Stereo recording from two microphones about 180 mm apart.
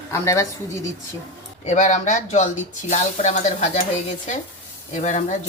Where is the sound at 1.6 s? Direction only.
45° left (ahead or behind).